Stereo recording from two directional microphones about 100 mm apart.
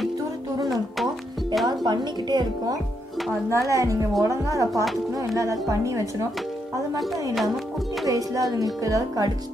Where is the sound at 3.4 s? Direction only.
30° right (ahead or behind).